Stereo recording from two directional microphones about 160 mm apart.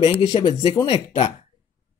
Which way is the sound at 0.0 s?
35° left (ahead or behind).